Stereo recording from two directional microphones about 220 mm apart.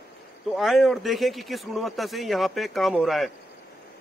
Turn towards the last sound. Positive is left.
turn(degrees=0)  # may be behind; listen again after turning